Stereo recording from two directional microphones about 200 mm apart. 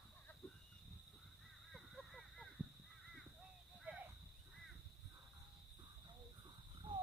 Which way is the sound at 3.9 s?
10° right (ahead or behind).